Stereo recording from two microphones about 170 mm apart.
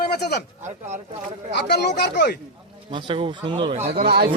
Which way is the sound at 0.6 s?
45° right (ahead or behind).